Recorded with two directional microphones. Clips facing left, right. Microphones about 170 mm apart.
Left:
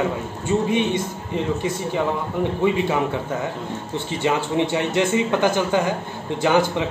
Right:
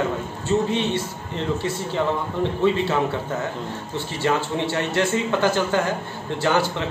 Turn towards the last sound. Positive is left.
turn(degrees=15)  # may be behind; listen again after turning